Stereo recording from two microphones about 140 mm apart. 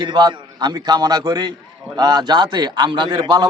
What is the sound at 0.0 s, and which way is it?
A man's voice, 30° right (ahead or behind).